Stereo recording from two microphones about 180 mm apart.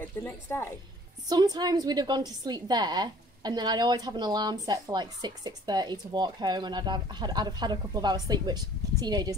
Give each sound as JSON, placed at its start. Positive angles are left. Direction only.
{"t": 0.2, "sound": "speech", "side_deg": 10}
{"t": 1.3, "sound": "a woman's voice", "side_deg": -20}